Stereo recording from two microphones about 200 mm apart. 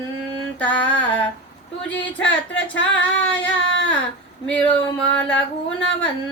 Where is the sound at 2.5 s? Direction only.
65° left (ahead or behind).